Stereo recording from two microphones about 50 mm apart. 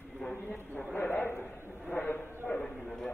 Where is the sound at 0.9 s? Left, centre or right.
Left.